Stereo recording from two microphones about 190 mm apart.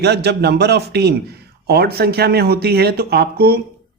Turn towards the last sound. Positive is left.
turn(degrees=-55)  # may be behind; listen again after turning